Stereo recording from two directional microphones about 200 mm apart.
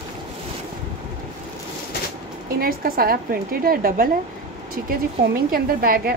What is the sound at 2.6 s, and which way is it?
A woman's voice, 45° right (ahead or behind).